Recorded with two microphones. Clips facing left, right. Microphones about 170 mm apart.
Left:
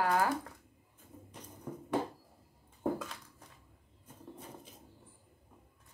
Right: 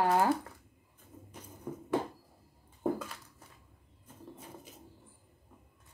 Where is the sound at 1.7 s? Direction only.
10° right (ahead or behind).